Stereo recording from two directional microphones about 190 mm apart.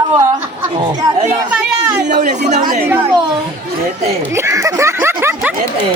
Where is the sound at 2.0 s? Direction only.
40° right (ahead or behind).